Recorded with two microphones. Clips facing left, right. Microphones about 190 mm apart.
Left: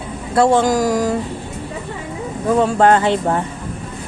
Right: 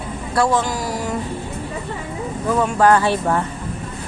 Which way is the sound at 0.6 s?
45° left (ahead or behind).